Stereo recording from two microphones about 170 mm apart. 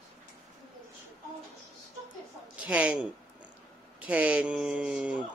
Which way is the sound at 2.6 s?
10° right (ahead or behind).